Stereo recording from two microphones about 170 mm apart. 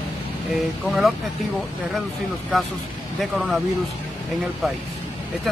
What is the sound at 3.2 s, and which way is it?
Speech, centre (ahead or behind).